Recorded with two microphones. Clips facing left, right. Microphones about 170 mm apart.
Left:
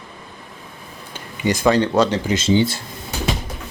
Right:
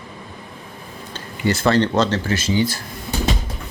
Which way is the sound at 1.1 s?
15° left (ahead or behind).